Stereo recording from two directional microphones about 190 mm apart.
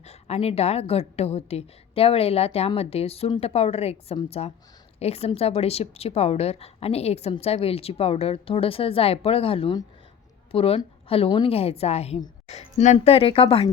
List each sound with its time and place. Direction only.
0.0 s a woman's voice: 35° left (ahead or behind)